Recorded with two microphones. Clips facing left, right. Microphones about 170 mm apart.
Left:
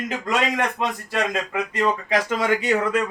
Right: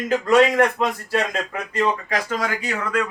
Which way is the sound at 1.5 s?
20° left (ahead or behind).